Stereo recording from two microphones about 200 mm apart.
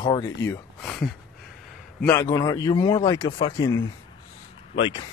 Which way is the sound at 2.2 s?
15° left (ahead or behind).